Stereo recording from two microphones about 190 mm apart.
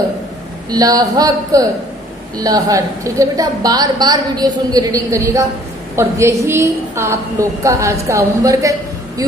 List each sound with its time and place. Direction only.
0.7 s a woman's voice: 20° right (ahead or behind)